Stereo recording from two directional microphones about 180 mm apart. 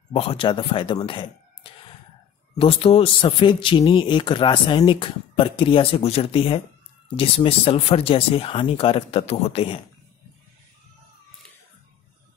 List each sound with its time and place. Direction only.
0.1 s a man's voice: 30° left (ahead or behind)